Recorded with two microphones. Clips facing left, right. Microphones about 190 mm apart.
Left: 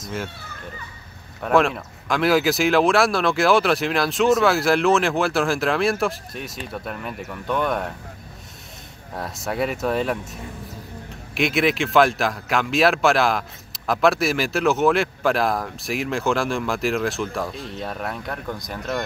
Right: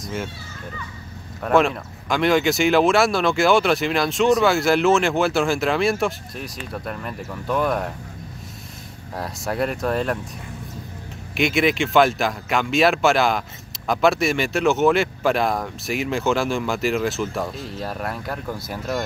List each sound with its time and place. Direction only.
0.0 s a child's voice: centre (ahead or behind)
1.4 s speech: centre (ahead or behind)
9.1 s speech: centre (ahead or behind)
11.3 s speech: centre (ahead or behind)